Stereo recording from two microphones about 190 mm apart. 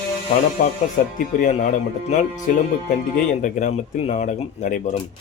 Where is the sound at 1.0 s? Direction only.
45° left (ahead or behind).